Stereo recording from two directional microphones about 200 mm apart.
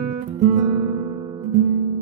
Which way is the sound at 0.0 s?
35° right (ahead or behind).